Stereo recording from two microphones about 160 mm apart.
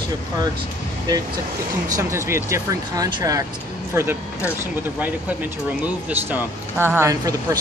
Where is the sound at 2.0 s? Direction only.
15° right (ahead or behind).